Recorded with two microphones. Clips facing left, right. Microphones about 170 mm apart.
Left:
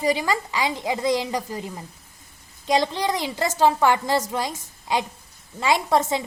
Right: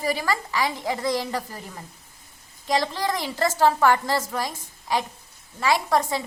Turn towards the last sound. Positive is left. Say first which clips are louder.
# left 2 dB
turn(degrees=20)  # may be behind; listen again after turning